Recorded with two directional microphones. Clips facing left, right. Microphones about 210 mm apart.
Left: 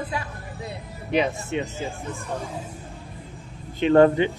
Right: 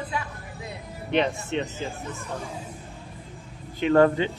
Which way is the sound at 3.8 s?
25° left (ahead or behind).